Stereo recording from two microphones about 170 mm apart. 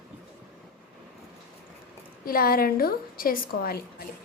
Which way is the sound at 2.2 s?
60° left (ahead or behind).